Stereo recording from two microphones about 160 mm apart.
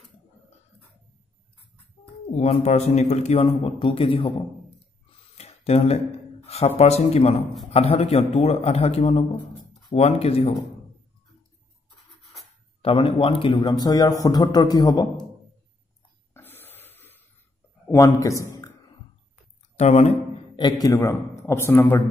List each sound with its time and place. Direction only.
2.3 s a man's voice: 45° left (ahead or behind)
5.4 s a sound: 40° left (ahead or behind)
6.8 s a man's voice: 40° left (ahead or behind)
12.8 s a man's voice: 35° left (ahead or behind)
16.3 s a sound: 15° left (ahead or behind)
17.8 s a man's voice: 20° left (ahead or behind)
19.8 s a man's voice: 45° left (ahead or behind)
20.5 s a man's voice: 25° left (ahead or behind)